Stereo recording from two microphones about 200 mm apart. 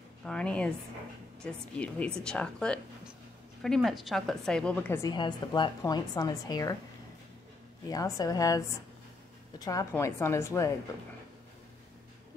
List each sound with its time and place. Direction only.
0.2 s a woman's voice: 5° left (ahead or behind)
7.9 s a woman's voice: 20° left (ahead or behind)